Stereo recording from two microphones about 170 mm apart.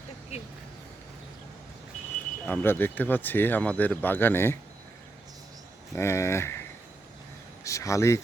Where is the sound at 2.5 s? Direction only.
10° left (ahead or behind).